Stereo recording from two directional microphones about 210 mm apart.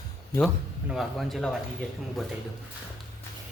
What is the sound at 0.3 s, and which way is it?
Speech, centre (ahead or behind).